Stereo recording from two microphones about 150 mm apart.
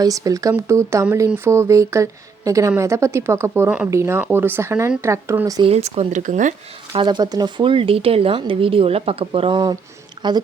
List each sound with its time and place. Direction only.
0.0 s a woman's voice: 25° right (ahead or behind)
5.6 s speech: 45° right (ahead or behind)
6.9 s speech: 30° right (ahead or behind)
10.2 s a sound: 35° right (ahead or behind)